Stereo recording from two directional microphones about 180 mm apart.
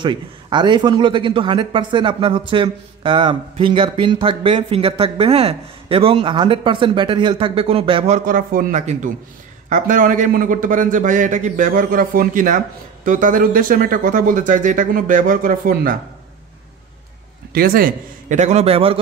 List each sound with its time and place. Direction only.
0.0 s a man's voice: 25° right (ahead or behind)
8.3 s a man's voice: 50° right (ahead or behind)
17.5 s a man's voice: 55° right (ahead or behind); by 18.9 s 35° right (ahead or behind)